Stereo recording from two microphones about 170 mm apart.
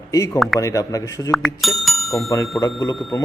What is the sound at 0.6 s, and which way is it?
Speech, 20° left (ahead or behind).